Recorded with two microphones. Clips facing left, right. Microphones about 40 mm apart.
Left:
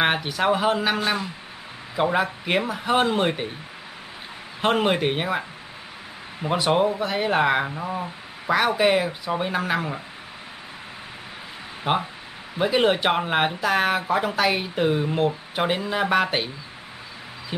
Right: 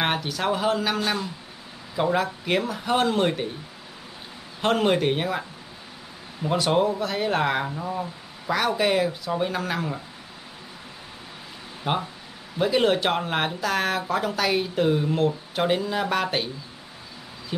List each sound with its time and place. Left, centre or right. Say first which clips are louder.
0.0 s speech: left 3 dB; centre
4.6 s speech: even; centre
6.4 s speech: left 1 dB; centre
11.9 s speech: left 3 dB; left